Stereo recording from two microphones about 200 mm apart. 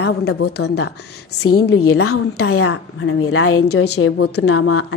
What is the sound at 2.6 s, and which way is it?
A woman's voice, 65° left (ahead or behind).